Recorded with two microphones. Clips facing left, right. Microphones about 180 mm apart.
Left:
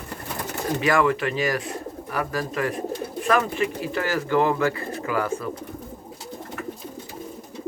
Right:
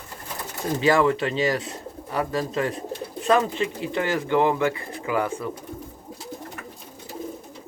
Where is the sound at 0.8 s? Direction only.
30° right (ahead or behind).